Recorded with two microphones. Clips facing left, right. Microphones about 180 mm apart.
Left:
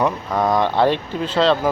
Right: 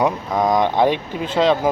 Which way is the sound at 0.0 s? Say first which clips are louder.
Right 1 dB; 15° right (ahead or behind).